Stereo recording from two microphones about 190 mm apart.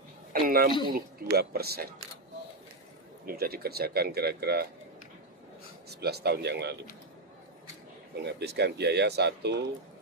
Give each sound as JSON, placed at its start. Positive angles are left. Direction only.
{"t": 0.3, "sound": "speech", "side_deg": -50}
{"t": 3.3, "sound": "speech", "side_deg": -55}
{"t": 5.9, "sound": "speech", "side_deg": -60}
{"t": 8.2, "sound": "speech", "side_deg": -60}